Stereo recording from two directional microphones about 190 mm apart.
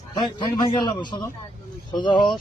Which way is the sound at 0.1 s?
25° left (ahead or behind).